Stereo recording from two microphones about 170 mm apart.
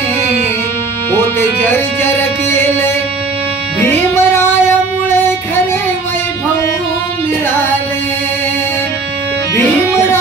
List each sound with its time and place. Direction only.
2.0 s music: 15° left (ahead or behind)